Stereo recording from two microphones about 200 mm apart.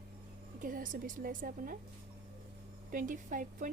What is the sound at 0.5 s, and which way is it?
A woman's voice, 45° right (ahead or behind).